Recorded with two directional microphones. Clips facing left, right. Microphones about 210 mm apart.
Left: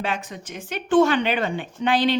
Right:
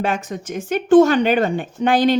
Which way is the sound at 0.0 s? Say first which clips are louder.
Right 6 dB; 45° right (ahead or behind).